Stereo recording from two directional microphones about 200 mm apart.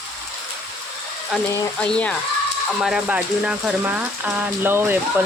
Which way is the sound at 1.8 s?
5° left (ahead or behind).